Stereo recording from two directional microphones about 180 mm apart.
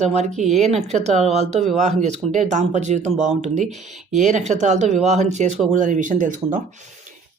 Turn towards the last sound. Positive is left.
turn(degrees=-45)  # may be behind; listen again after turning